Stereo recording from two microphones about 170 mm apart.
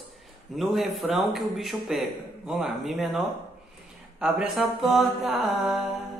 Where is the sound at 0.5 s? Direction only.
Centre (ahead or behind).